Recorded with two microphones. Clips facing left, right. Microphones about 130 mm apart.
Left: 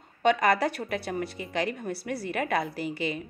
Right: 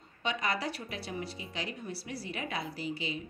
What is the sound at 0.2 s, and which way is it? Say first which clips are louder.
A woman's voice: left 10 dB; 55° left (ahead or behind).